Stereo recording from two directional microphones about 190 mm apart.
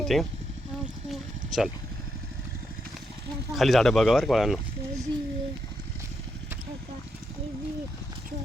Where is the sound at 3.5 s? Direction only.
Centre (ahead or behind).